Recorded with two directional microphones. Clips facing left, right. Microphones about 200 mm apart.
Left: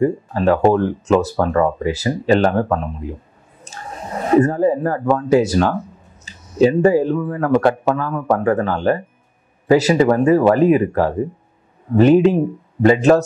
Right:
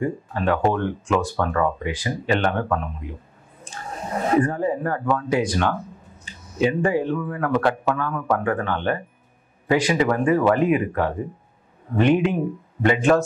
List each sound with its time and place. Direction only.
0.0 s speech: 40° left (ahead or behind)
4.4 s speech: 40° left (ahead or behind)